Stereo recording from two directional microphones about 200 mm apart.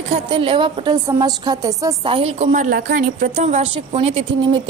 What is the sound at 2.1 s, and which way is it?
A woman's voice, 30° right (ahead or behind).